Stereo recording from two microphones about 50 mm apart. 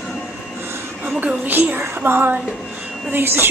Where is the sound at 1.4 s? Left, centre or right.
Right.